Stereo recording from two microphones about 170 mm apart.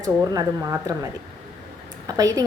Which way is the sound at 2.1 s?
20° right (ahead or behind).